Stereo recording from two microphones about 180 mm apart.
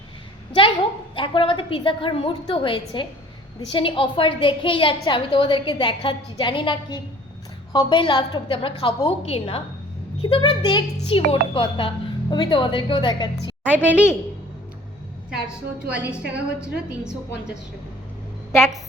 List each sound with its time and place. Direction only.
1.1 s a woman's voice: 30° left (ahead or behind)
13.4 s a woman's voice: 10° right (ahead or behind)
13.9 s a woman's voice: 15° left (ahead or behind)
15.3 s a woman's voice: 5° right (ahead or behind)